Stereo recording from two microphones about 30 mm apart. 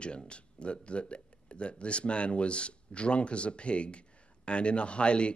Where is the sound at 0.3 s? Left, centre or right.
Left.